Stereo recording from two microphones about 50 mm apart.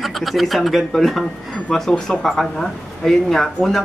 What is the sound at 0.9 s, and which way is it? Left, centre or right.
Speech, centre.